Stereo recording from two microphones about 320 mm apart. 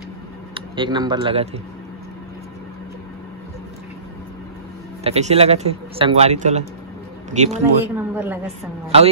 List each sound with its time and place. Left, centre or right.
0.6 s speech: centre
5.0 s a man's voice: centre
7.8 s speech: centre